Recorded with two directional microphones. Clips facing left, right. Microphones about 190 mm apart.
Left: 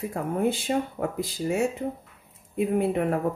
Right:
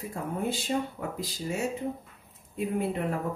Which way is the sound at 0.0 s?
60° left (ahead or behind).